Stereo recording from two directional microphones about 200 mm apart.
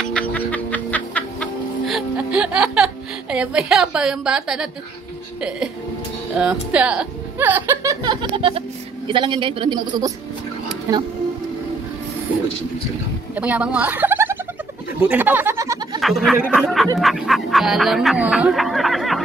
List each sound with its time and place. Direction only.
0.0 s music: 5° left (ahead or behind)
6.3 s speech: 5° right (ahead or behind); by 10.1 s 20° right (ahead or behind)
13.3 s speech: 5° right (ahead or behind)
16.0 s speech: centre (ahead or behind)
17.0 s quack: centre (ahead or behind)